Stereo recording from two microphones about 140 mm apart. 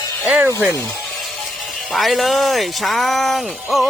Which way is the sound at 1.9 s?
Centre (ahead or behind).